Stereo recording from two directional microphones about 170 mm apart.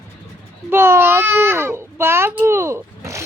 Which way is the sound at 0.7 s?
15° right (ahead or behind).